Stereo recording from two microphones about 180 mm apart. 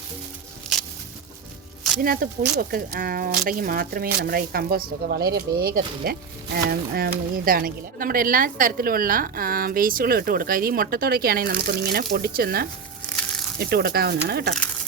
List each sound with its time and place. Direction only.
2.0 s speech: 55° right (ahead or behind)